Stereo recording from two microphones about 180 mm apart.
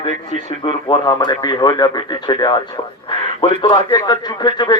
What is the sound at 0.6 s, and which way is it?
A man's voice, 25° left (ahead or behind).